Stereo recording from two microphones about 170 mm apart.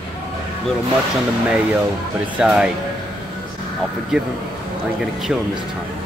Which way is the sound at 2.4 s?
5° right (ahead or behind).